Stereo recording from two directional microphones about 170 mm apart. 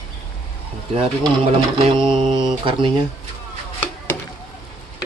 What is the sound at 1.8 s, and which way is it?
Mantra, 30° right (ahead or behind).